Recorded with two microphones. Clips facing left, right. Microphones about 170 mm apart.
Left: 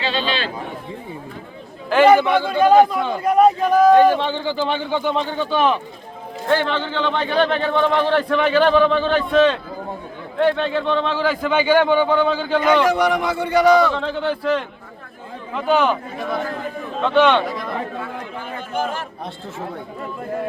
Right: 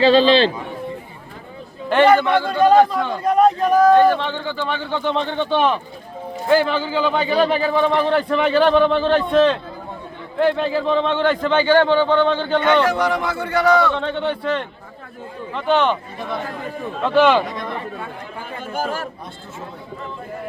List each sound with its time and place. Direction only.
0.0 s a man's voice: 35° right (ahead or behind)
1.9 s a man's voice: 5° left (ahead or behind)
13.8 s a man's voice: centre (ahead or behind)
17.0 s a man's voice: centre (ahead or behind)
18.7 s a man's voice: 45° right (ahead or behind)